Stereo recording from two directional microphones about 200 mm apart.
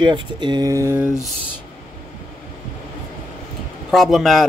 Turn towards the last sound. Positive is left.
turn(degrees=0)  # may be behind; listen again after turning